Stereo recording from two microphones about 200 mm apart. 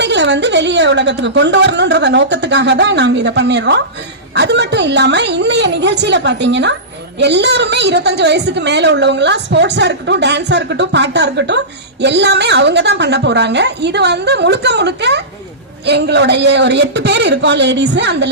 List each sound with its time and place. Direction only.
0.0 s a woman's voice: 60° right (ahead or behind)